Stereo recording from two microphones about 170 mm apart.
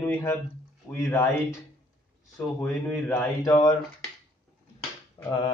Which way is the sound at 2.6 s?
10° left (ahead or behind).